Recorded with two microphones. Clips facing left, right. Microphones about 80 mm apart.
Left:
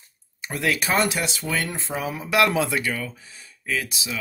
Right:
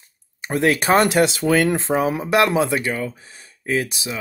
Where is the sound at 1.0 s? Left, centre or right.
Right.